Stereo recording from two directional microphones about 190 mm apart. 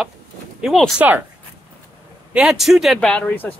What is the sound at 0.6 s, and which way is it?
Speech, centre (ahead or behind).